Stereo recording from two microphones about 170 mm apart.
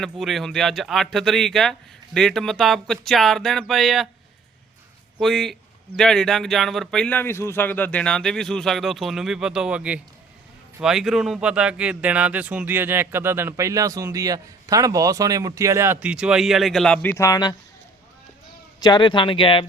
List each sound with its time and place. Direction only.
0.0 s speech: centre (ahead or behind)
5.2 s speech: centre (ahead or behind); by 17.5 s 20° left (ahead or behind)
18.8 s speech: 25° left (ahead or behind)